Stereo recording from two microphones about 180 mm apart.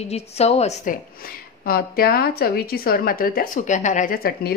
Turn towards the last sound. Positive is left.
turn(degrees=60)  # may be behind; listen again after turning